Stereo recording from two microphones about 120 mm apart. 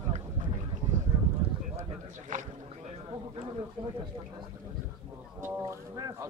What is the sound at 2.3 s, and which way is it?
Boat, 90° right.